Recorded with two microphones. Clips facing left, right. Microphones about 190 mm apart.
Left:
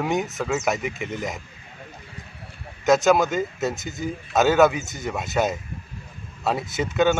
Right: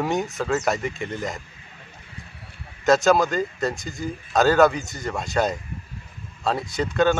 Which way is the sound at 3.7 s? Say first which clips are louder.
Left 1 dB; 20° left (ahead or behind).